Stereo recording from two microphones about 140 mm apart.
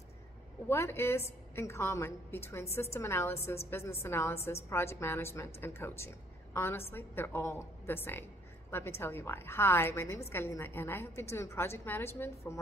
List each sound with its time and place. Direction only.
0.7 s a woman's voice: 20° left (ahead or behind)